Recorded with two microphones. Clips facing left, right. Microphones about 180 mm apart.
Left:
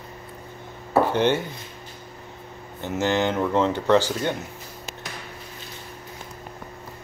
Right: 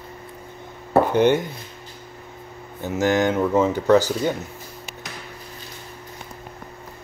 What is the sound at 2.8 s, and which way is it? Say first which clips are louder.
Speech: right 3 dB; 10° right (ahead or behind).